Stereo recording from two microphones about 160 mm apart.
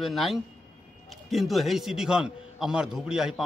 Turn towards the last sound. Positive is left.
turn(degrees=-5)  # may be behind; listen again after turning